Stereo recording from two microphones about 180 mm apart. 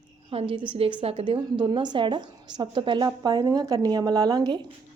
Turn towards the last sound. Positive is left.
turn(degrees=-25)  # may be behind; listen again after turning